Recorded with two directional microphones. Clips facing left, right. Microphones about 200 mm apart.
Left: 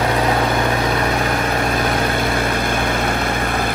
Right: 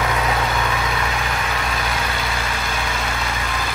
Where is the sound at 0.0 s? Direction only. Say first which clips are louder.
Left 4 dB; 35° left (ahead or behind).